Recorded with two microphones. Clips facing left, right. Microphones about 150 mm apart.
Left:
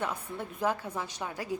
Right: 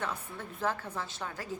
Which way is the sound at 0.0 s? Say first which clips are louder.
Left 3 dB; 15° left (ahead or behind).